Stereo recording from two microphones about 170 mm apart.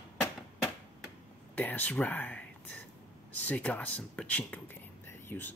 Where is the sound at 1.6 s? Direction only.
10° left (ahead or behind).